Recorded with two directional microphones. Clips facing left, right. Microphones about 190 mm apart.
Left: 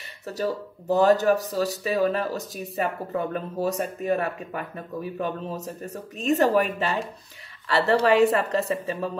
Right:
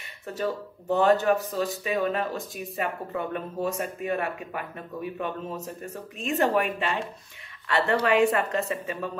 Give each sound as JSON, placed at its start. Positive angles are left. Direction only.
{"t": 0.3, "sound": "speech", "side_deg": 40}